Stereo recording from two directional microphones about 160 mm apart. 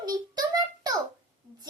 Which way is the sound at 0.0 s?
25° right (ahead or behind).